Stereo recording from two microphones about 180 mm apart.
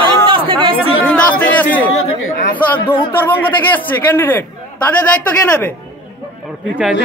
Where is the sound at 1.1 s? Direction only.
10° left (ahead or behind).